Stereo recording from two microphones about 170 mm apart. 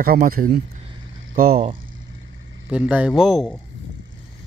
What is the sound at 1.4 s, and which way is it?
Speech, 40° right (ahead or behind).